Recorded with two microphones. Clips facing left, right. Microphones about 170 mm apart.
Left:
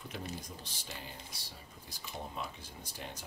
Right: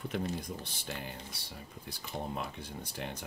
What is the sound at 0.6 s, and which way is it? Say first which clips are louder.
Speech: right 6 dB; 60° right (ahead or behind).